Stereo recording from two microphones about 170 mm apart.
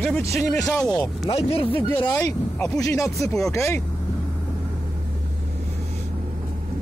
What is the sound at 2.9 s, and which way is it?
Speech, 20° left (ahead or behind).